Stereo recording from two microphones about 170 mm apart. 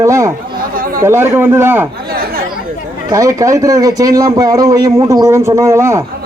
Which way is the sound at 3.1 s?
20° right (ahead or behind).